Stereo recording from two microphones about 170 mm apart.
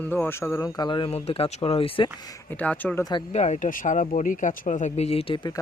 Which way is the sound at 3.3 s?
40° left (ahead or behind).